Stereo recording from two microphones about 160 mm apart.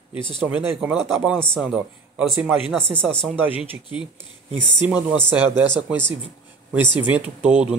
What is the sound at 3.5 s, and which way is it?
Speech, 30° left (ahead or behind).